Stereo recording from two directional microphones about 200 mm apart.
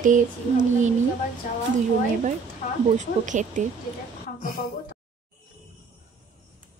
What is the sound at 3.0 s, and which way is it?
Speech, 40° right (ahead or behind).